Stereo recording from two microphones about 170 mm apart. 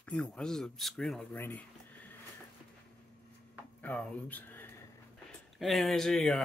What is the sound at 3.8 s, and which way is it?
Speech, 10° left (ahead or behind).